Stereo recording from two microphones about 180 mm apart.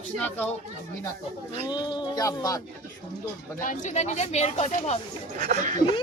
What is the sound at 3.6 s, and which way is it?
Speech, 45° left (ahead or behind).